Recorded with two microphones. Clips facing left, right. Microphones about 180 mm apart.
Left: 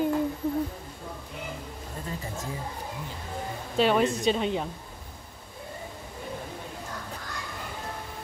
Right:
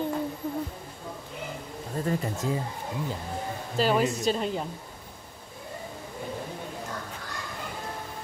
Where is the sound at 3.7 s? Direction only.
Centre (ahead or behind).